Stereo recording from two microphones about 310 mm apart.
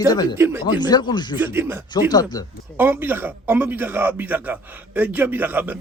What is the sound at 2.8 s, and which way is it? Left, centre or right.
A man's voice, centre.